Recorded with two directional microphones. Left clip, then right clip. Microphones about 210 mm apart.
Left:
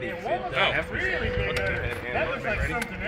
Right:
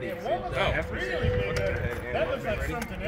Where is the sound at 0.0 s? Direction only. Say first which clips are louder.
Left 1 dB; 15° right (ahead or behind).